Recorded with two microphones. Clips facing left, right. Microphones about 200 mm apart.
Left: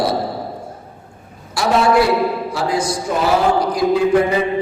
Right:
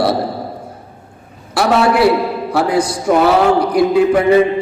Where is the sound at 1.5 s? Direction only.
65° right (ahead or behind).